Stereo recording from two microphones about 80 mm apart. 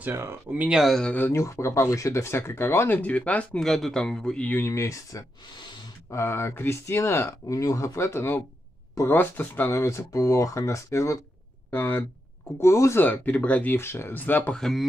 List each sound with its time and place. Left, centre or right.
0.0 s speech: right
0.5 s speech: right
0.7 s speech: centre
1.3 s speech: left
3.0 s speech: centre
3.5 s speech: centre
4.5 s speech: left
7.4 s speech: left
9.7 s speech: left
11.7 s speech: left
12.5 s speech: left
13.0 s speech: left
13.7 s speech: left
14.5 s speech: centre